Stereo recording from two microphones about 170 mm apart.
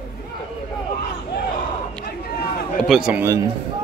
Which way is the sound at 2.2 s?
65° left (ahead or behind).